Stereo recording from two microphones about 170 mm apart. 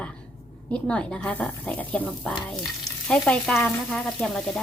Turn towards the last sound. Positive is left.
turn(degrees=5)  # may be behind; listen again after turning